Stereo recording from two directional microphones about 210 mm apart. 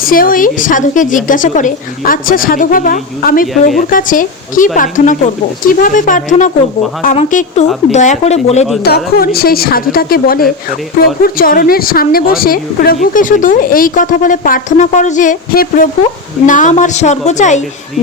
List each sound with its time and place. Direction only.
0.0 s a woman's voice: 40° left (ahead or behind)
9.1 s a woman's voice: 45° left (ahead or behind)